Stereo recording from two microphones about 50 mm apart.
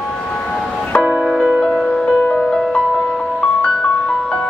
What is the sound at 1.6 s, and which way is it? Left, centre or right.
Music, centre.